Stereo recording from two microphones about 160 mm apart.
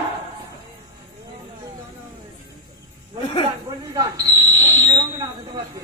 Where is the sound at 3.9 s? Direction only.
20° right (ahead or behind).